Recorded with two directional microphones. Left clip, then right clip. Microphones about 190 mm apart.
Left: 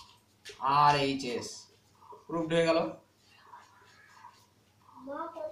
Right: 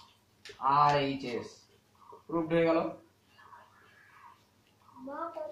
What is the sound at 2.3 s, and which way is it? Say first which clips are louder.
Speech: even; 20° left (ahead or behind).